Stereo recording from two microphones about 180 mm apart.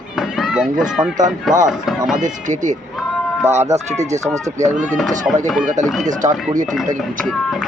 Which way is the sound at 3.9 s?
40° right (ahead or behind).